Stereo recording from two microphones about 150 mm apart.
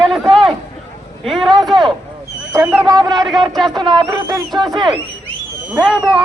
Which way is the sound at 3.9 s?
25° right (ahead or behind).